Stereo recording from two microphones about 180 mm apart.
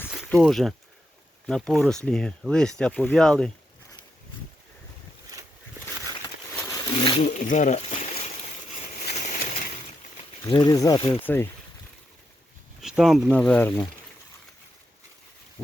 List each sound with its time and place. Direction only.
0.4 s speech: centre (ahead or behind)
6.7 s a sound: 15° left (ahead or behind)
7.3 s speech: 45° left (ahead or behind)
8.4 s a sound: 35° left (ahead or behind)
10.4 s speech: 20° left (ahead or behind)
11.2 s speech: 10° left (ahead or behind)
13.0 s speech: centre (ahead or behind)